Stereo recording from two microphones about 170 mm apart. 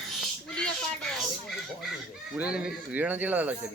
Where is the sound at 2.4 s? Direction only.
5° right (ahead or behind).